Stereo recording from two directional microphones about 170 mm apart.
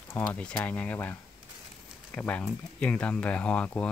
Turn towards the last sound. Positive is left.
turn(degrees=5)  # may be behind; listen again after turning